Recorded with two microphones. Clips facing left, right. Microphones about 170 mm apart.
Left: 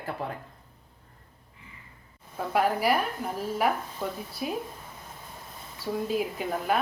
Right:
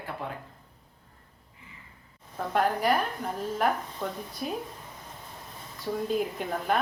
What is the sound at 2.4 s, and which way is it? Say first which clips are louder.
Speech: left 1 dB; 5° left (ahead or behind).